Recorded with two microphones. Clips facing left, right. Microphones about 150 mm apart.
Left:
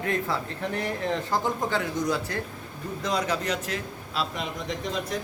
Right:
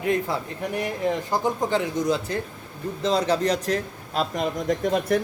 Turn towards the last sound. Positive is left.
turn(degrees=-60)  # may be behind; listen again after turning